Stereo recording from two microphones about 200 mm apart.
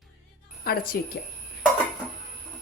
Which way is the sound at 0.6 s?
50° left (ahead or behind).